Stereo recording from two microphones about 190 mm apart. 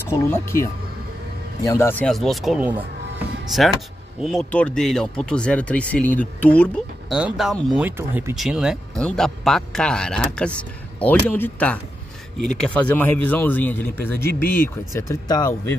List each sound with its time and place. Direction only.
0.3 s speech: 15° left (ahead or behind); by 2.8 s 5° right (ahead or behind)
4.2 s speech: centre (ahead or behind)
7.2 s speech: 5° right (ahead or behind); by 15.5 s 20° left (ahead or behind)